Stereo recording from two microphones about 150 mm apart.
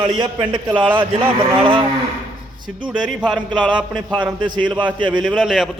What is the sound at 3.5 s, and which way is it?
A man's voice, 30° right (ahead or behind).